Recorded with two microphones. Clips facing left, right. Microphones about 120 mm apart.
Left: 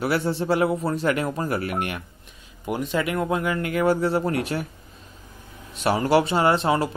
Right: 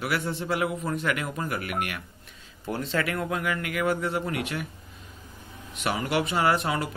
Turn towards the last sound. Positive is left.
turn(degrees=30)  # may be behind; listen again after turning